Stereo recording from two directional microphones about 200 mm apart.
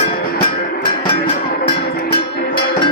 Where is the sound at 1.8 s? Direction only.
55° left (ahead or behind).